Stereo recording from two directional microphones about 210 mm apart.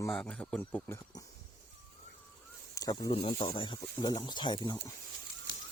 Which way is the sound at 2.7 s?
20° left (ahead or behind).